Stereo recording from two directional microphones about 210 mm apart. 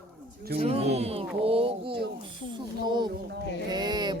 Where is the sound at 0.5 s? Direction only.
30° right (ahead or behind).